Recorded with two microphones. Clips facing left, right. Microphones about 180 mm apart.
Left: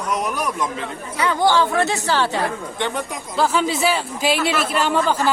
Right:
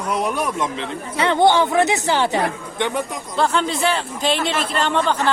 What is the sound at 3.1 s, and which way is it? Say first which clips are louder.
Speech: left 2 dB; 5° left (ahead or behind).